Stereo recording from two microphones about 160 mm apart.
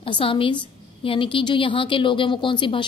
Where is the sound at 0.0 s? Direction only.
35° left (ahead or behind).